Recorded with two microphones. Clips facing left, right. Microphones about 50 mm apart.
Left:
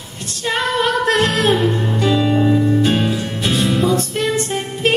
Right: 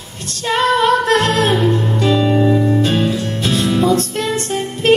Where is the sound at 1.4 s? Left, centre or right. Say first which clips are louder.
Right 1 dB; centre.